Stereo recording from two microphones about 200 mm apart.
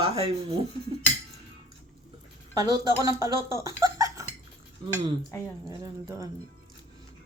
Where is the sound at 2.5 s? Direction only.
20° right (ahead or behind).